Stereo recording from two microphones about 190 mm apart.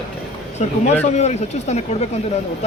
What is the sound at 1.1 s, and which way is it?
Speech, 35° left (ahead or behind).